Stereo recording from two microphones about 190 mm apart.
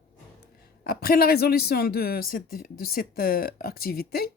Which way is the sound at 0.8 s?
55° left (ahead or behind).